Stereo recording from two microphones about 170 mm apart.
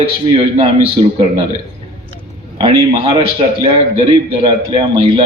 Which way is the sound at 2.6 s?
30° right (ahead or behind).